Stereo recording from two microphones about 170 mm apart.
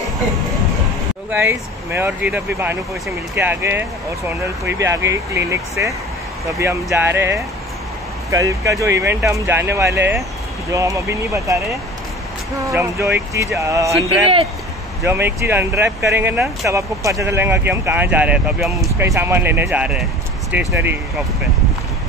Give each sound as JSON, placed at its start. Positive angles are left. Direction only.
{"t": 1.3, "sound": "speech", "side_deg": -15}
{"t": 12.6, "sound": "speech", "side_deg": -15}
{"t": 15.0, "sound": "speech", "side_deg": -10}
{"t": 18.9, "sound": "speech", "side_deg": -15}